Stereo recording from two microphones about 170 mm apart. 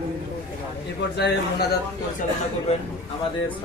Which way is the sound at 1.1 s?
75° left (ahead or behind).